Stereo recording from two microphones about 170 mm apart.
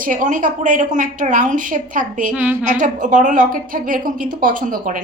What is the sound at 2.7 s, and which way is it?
A woman's voice, 50° right (ahead or behind).